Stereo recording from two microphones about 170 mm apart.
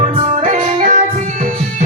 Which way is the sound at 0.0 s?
45° right (ahead or behind).